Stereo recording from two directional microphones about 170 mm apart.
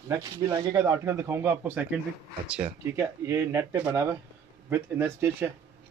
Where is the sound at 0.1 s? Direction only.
20° right (ahead or behind).